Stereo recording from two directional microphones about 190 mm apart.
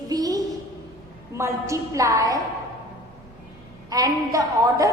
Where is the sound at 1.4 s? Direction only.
15° right (ahead or behind).